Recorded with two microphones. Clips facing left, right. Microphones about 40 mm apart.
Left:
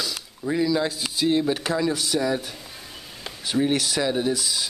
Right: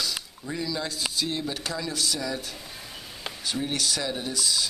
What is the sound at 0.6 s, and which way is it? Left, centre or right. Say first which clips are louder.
Speech: left 6 dB; centre.